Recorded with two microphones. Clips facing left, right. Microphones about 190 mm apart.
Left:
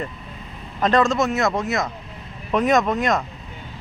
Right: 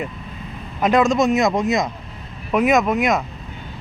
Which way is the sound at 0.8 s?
10° right (ahead or behind).